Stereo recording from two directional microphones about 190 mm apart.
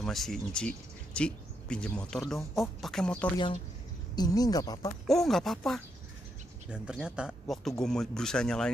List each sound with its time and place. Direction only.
0.0 s speech: centre (ahead or behind)
4.1 s speech: 20° left (ahead or behind)
5.0 s speech: centre (ahead or behind)